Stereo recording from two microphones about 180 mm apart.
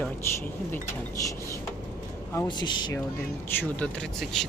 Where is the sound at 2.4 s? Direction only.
25° left (ahead or behind).